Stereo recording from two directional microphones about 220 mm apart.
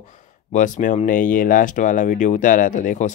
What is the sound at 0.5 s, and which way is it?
Speech, 35° left (ahead or behind).